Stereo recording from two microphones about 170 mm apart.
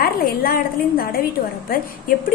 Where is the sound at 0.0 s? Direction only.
60° left (ahead or behind).